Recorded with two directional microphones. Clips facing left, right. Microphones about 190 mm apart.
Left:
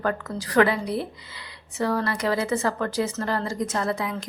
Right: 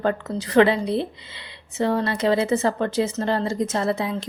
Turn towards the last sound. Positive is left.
turn(degrees=-25)  # may be behind; listen again after turning